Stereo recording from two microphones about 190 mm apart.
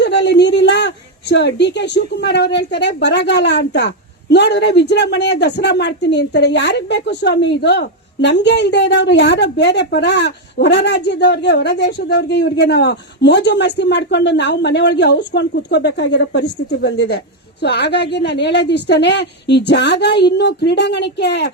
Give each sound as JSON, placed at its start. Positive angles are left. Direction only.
{"t": 0.0, "sound": "a woman's voice", "side_deg": 65}